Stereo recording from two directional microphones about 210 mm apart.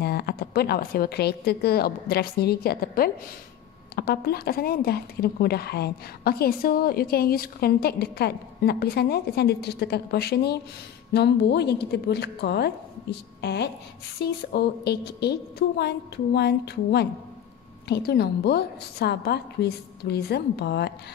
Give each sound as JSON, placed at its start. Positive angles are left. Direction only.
{"t": 0.0, "sound": "speech", "side_deg": 50}
{"t": 16.3, "sound": "speech", "side_deg": 50}